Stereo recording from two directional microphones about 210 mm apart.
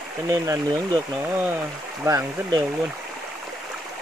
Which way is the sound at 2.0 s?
15° right (ahead or behind).